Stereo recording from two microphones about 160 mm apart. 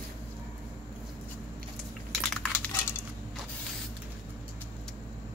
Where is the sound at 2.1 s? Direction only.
5° left (ahead or behind).